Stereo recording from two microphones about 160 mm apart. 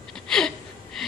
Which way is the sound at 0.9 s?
Centre (ahead or behind).